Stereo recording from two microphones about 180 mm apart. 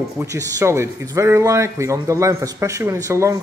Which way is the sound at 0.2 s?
20° right (ahead or behind).